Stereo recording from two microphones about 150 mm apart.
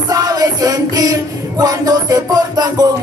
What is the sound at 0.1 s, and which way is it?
Music, 25° right (ahead or behind).